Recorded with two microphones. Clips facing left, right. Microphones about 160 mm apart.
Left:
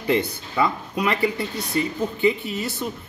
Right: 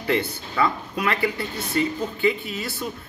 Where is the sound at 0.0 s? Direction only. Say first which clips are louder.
Left 2 dB; 15° left (ahead or behind).